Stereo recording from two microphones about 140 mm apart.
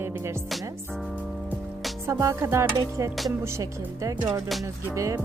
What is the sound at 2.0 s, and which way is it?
Music, 20° right (ahead or behind).